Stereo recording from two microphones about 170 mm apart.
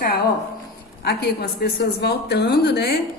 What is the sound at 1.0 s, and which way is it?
A woman's voice, 70° left (ahead or behind).